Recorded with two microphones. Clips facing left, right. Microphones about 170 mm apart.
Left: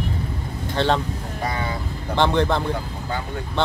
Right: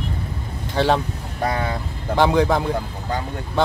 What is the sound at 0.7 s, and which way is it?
Speech, 10° right (ahead or behind).